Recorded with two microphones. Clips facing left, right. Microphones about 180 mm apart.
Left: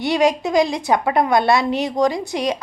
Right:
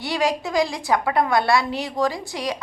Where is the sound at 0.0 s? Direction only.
20° left (ahead or behind).